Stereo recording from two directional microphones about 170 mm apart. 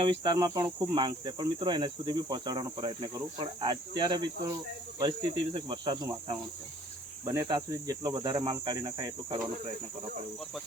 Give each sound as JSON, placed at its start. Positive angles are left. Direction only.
{"t": 0.0, "sound": "cricket", "side_deg": -25}